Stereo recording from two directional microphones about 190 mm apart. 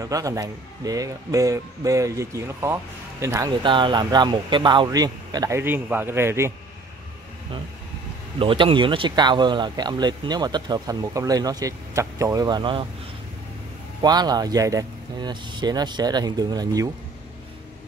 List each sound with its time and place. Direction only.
0.0 s a man's voice: 20° right (ahead or behind)
8.4 s a man's voice: 30° right (ahead or behind)
14.0 s a man's voice: 20° right (ahead or behind)